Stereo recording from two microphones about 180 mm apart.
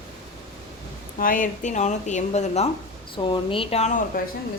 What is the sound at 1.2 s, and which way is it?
A woman's voice, 50° left (ahead or behind).